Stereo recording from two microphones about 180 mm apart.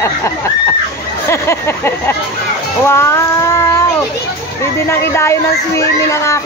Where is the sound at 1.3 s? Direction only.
15° left (ahead or behind).